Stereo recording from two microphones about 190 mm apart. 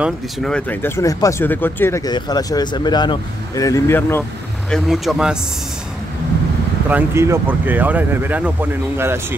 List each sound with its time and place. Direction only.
0.0 s speech: 5° left (ahead or behind)
4.6 s speech: centre (ahead or behind)
6.9 s speech: 10° right (ahead or behind)